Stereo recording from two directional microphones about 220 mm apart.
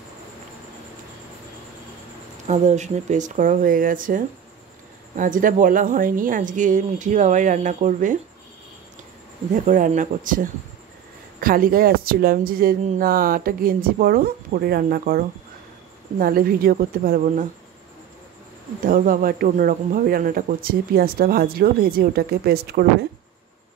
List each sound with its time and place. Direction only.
2.4 s speech: 30° right (ahead or behind)
9.7 s speech: 35° right (ahead or behind)
18.9 s speech: 40° right (ahead or behind)